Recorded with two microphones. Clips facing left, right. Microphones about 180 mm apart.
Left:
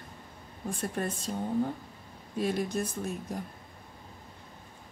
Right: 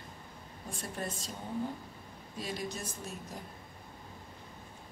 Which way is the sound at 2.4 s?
55° left (ahead or behind).